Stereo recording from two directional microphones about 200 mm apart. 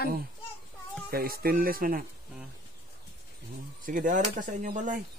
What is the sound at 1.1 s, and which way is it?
Speech, 50° right (ahead or behind).